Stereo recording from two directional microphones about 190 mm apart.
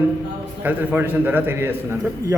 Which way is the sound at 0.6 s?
10° right (ahead or behind).